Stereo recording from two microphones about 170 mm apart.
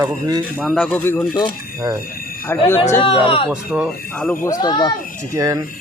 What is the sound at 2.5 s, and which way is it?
Speech, 15° left (ahead or behind).